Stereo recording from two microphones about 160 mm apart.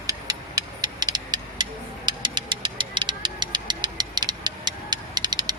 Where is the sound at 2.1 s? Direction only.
30° right (ahead or behind).